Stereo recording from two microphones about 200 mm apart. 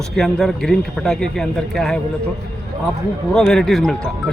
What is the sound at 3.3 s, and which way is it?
Speech, centre (ahead or behind).